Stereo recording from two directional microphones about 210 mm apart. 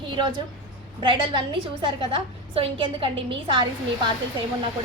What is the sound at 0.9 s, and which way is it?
A woman's voice, 25° right (ahead or behind).